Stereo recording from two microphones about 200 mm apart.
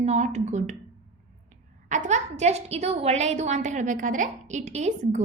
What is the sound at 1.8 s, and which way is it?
A woman's voice, 35° right (ahead or behind).